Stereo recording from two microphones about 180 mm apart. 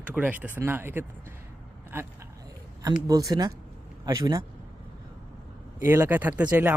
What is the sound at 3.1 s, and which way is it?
Speech, 20° right (ahead or behind).